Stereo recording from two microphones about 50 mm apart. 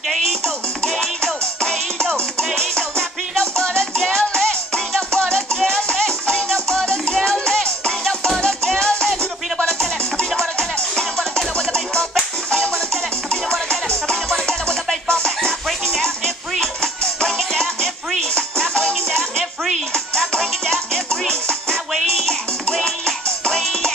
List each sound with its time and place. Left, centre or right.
0.8 s music: centre
23.4 s music: centre